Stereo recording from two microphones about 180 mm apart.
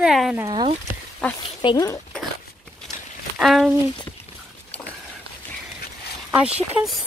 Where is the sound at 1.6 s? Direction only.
20° left (ahead or behind).